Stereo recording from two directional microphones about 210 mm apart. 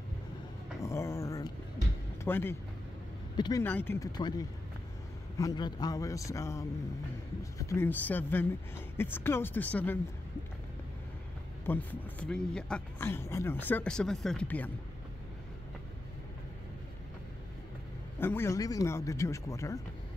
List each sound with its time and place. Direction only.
0.8 s a sound: 15° left (ahead or behind)
2.2 s speech: 10° left (ahead or behind)
3.6 s a man's voice: 10° left (ahead or behind)
11.6 s a man's voice: 10° left (ahead or behind)
18.2 s a man's voice: 10° left (ahead or behind)